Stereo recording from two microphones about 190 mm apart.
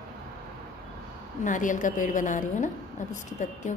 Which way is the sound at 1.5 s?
40° left (ahead or behind).